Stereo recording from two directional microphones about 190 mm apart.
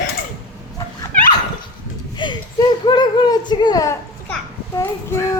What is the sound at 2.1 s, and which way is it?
Speech, 25° left (ahead or behind).